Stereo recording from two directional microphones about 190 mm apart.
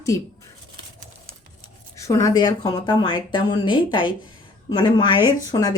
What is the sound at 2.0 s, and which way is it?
Speech, 15° left (ahead or behind).